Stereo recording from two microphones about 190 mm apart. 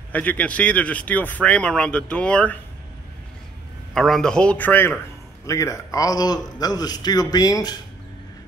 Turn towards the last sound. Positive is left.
turn(degrees=20)  # may be behind; listen again after turning